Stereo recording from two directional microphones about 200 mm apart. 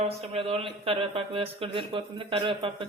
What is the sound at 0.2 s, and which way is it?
Speech, 30° right (ahead or behind).